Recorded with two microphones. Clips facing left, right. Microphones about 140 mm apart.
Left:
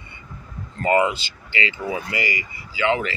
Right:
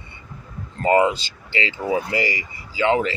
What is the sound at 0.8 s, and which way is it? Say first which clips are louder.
Speech: right 2 dB; 30° right (ahead or behind).